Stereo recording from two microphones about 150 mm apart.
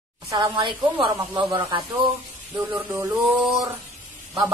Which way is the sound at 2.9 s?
20° right (ahead or behind).